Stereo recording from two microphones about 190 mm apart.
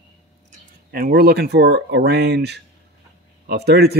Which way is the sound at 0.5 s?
50° right (ahead or behind).